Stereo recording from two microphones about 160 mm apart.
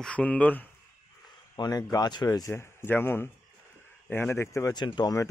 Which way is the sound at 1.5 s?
25° left (ahead or behind).